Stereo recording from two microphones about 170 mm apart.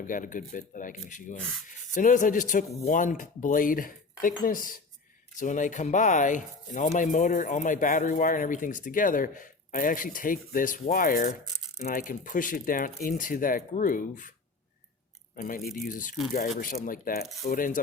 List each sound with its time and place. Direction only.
0.0 s speech: 50° left (ahead or behind)
15.4 s speech: 55° left (ahead or behind)